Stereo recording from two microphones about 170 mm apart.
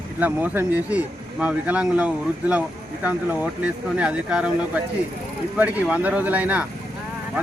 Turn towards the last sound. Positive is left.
turn(degrees=-10)  # may be behind; listen again after turning